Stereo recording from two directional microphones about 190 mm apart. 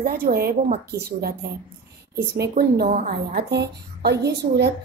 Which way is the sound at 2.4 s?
60° right (ahead or behind).